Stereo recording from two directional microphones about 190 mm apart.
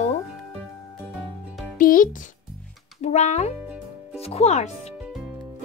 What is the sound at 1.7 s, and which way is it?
A child's voice, 45° left (ahead or behind).